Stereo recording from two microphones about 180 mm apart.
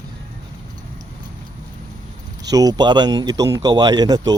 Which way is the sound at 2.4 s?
20° right (ahead or behind).